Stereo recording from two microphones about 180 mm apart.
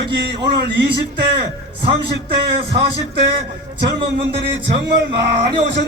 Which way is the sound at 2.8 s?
70° right (ahead or behind).